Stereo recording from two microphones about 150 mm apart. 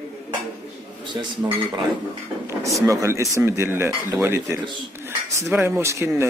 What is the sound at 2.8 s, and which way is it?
Speech, 20° right (ahead or behind).